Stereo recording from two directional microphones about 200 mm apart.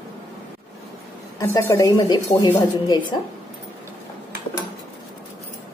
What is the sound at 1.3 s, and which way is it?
A woman's voice, 15° left (ahead or behind).